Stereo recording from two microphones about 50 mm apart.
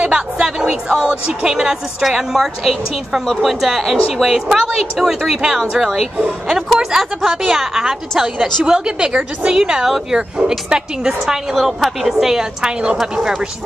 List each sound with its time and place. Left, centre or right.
0.0 s a woman's voice: centre
6.1 s speech: right
6.5 s a woman's voice: centre